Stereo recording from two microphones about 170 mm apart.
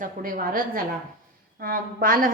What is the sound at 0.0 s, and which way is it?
A woman's voice, 55° right (ahead or behind).